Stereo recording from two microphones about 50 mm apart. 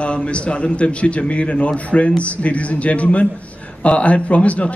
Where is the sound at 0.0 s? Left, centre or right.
Left.